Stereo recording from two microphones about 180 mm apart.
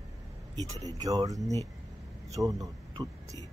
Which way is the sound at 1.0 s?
20° right (ahead or behind).